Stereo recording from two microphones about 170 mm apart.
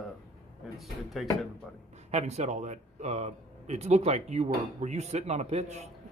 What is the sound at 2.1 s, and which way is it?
A man's voice, 40° right (ahead or behind).